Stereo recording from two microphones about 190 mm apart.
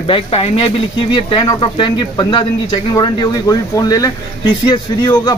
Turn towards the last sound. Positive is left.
turn(degrees=25)  # may be behind; listen again after turning